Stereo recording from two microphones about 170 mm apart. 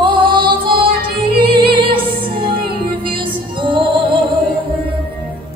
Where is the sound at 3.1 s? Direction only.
30° right (ahead or behind).